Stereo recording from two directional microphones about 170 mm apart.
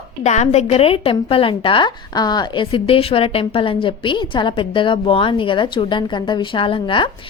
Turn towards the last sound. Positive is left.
turn(degrees=30)  # may be behind; listen again after turning